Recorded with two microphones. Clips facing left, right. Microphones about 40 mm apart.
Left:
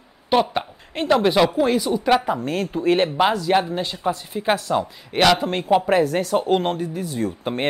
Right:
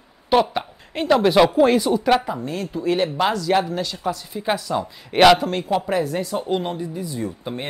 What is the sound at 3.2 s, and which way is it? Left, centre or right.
Speech, centre.